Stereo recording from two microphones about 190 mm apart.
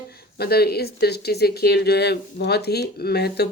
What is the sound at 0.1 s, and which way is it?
Speech, 55° left (ahead or behind).